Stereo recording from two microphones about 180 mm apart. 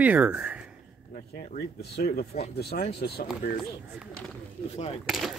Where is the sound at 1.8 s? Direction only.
60° left (ahead or behind).